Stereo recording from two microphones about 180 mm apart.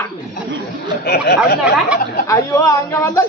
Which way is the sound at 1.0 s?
60° left (ahead or behind).